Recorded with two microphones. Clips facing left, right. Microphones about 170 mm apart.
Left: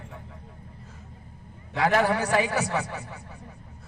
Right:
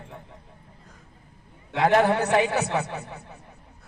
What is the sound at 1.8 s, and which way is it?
A man's voice, 25° right (ahead or behind).